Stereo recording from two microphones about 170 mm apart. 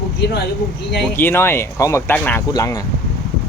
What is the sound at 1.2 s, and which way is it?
Speech, 15° left (ahead or behind).